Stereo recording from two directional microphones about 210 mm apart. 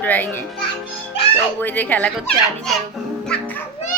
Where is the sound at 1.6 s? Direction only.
10° left (ahead or behind).